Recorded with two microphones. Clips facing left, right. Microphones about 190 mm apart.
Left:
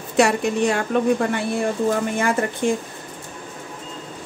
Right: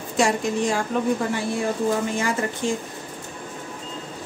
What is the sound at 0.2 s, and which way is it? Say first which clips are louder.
Speech: left 4 dB; 65° left (ahead or behind).